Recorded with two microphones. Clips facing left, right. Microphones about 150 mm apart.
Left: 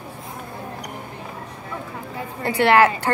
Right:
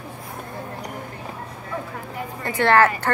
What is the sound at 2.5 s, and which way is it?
Speech, 15° left (ahead or behind).